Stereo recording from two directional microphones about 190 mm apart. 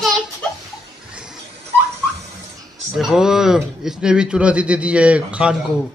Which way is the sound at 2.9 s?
5° right (ahead or behind).